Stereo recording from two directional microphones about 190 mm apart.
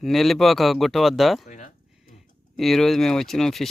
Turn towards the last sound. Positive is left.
turn(degrees=0)  # may be behind; listen again after turning